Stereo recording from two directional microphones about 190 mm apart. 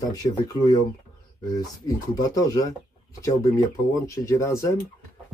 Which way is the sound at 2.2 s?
20° left (ahead or behind).